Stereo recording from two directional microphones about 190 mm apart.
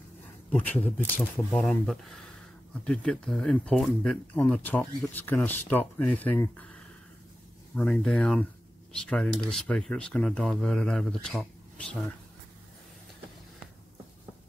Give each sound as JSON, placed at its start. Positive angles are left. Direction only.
{"t": 0.5, "sound": "speech", "side_deg": 10}